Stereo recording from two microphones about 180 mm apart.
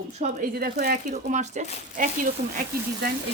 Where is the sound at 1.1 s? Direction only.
40° right (ahead or behind).